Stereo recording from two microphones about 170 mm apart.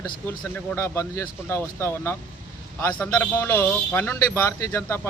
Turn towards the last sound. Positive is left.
turn(degrees=15)  # may be behind; listen again after turning